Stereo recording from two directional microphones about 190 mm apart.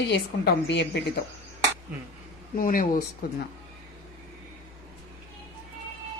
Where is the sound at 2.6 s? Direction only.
45° left (ahead or behind).